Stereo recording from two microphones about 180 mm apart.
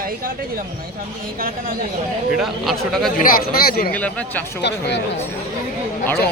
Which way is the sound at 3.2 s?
55° left (ahead or behind).